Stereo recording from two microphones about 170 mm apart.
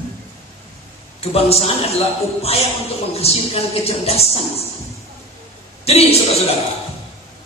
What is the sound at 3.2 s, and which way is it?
Speech, 35° left (ahead or behind).